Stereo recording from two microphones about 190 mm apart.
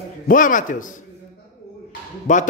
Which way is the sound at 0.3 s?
45° left (ahead or behind).